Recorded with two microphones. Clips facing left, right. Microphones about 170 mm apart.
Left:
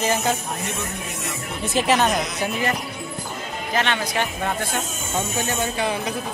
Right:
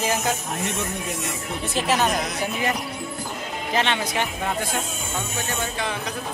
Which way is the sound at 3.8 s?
20° right (ahead or behind).